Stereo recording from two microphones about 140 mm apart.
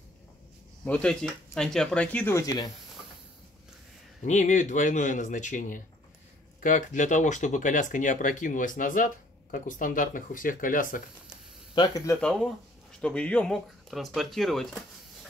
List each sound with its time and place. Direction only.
0.8 s speech: 5° left (ahead or behind)
4.2 s speech: 60° left (ahead or behind); by 11.0 s 75° left (ahead or behind)
11.7 s speech: 35° left (ahead or behind)
12.2 s speech: 5° left (ahead or behind)